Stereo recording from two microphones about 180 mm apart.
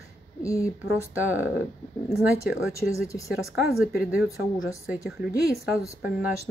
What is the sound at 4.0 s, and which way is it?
Speech, 5° right (ahead or behind).